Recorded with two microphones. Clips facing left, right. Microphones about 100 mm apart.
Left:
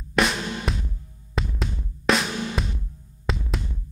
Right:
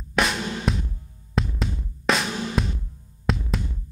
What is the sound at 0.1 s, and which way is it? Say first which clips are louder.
Drum: left 1 dB; centre (ahead or behind).